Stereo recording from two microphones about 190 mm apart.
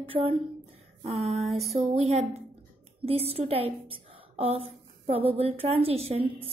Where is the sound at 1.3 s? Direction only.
Centre (ahead or behind).